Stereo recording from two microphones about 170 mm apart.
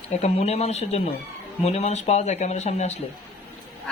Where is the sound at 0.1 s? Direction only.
40° left (ahead or behind).